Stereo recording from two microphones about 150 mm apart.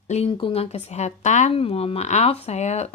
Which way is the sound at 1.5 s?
40° left (ahead or behind).